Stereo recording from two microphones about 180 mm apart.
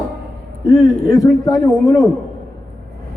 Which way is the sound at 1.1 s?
20° left (ahead or behind).